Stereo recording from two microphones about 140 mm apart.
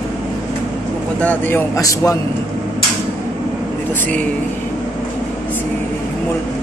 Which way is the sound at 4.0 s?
10° left (ahead or behind).